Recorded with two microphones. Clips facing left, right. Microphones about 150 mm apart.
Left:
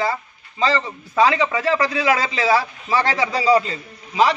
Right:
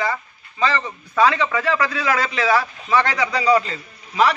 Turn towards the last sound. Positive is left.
turn(degrees=25)  # may be behind; listen again after turning